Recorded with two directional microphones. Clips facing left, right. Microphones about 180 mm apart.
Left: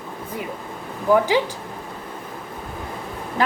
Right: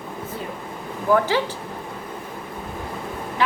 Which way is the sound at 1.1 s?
15° left (ahead or behind).